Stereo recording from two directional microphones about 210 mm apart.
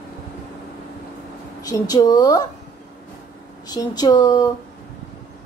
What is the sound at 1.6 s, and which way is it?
Speech, 20° left (ahead or behind).